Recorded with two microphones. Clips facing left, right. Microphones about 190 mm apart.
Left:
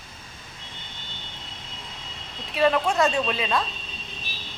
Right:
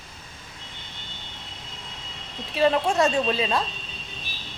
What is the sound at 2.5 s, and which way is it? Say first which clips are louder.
Speech: even; 30° right (ahead or behind).